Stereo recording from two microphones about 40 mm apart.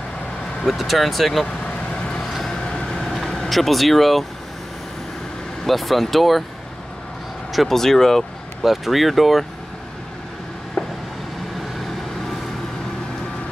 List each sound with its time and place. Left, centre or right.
0.7 s speech: centre
1.9 s vehicle: left
3.4 s speech: centre
5.7 s speech: centre
7.5 s speech: centre
8.6 s speech: centre